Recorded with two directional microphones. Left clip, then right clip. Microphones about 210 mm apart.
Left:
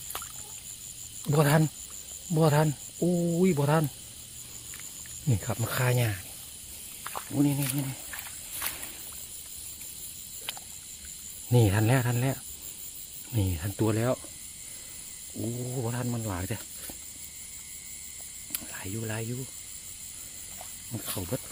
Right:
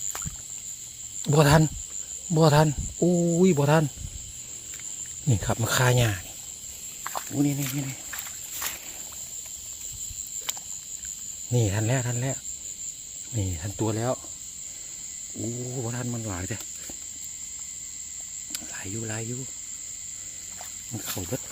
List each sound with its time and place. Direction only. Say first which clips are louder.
1.2 s speech: right 5 dB; 15° right (ahead or behind)
5.3 s speech: right 6 dB; 20° right (ahead or behind)
7.0 s snake: right 4 dB; 50° right (ahead or behind)
7.3 s speech: even; centre (ahead or behind)
11.5 s speech: left 2 dB; 15° left (ahead or behind)
15.4 s speech: right 1 dB; centre (ahead or behind)
18.5 s cricket: right 2 dB; 5° left (ahead or behind)
20.9 s speech: right 2 dB; centre (ahead or behind)